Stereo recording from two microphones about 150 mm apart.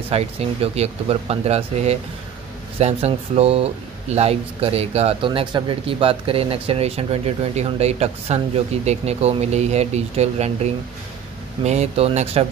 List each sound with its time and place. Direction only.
0.1 s speech: 40° right (ahead or behind)